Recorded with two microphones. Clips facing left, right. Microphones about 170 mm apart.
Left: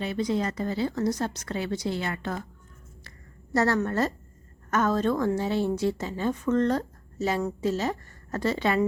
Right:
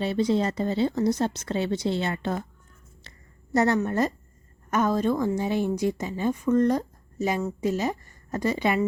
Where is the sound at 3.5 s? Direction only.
20° right (ahead or behind).